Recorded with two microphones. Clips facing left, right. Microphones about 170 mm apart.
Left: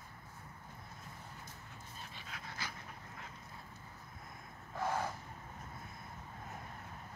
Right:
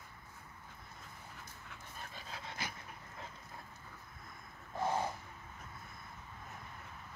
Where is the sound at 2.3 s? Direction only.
25° right (ahead or behind).